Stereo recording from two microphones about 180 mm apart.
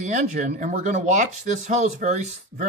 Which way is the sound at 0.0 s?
45° right (ahead or behind).